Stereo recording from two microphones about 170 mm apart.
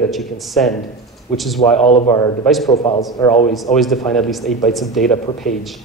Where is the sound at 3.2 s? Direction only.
10° left (ahead or behind).